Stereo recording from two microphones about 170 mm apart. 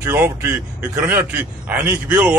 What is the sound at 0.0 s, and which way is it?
A man's voice, 15° right (ahead or behind).